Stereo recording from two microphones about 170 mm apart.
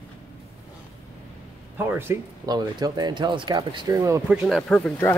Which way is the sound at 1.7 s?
10° right (ahead or behind).